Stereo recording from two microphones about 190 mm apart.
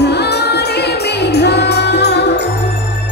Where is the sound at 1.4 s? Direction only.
60° left (ahead or behind).